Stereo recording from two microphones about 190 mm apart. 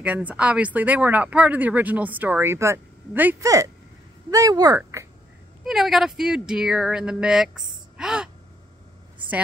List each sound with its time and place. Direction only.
0.0 s speech: 10° right (ahead or behind)
5.6 s speech: centre (ahead or behind)